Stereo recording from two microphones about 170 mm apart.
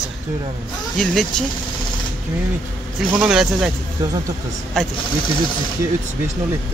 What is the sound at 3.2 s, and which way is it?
Speech, 5° right (ahead or behind).